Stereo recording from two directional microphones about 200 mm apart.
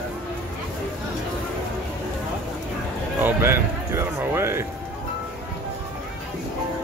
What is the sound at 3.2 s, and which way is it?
Speech, 10° right (ahead or behind).